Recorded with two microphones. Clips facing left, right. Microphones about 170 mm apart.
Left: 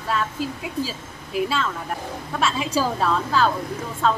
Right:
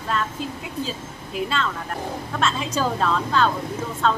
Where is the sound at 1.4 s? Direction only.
5° left (ahead or behind).